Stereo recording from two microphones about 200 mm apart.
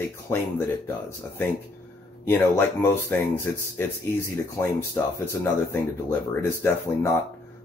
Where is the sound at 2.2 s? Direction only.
10° left (ahead or behind).